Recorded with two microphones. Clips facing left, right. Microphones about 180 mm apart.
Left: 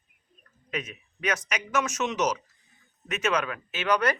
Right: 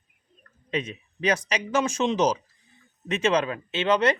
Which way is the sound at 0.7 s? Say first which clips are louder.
Right 5 dB; 30° right (ahead or behind).